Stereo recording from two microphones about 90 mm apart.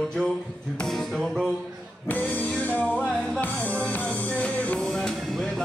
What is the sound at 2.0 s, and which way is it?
Music, 20° left (ahead or behind).